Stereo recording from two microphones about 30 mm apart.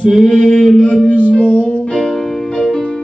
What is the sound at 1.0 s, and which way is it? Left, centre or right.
Music, left.